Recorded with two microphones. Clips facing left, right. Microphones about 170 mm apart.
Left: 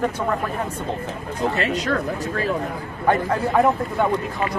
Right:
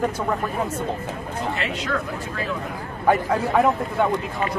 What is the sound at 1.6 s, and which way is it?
Speech, 40° left (ahead or behind).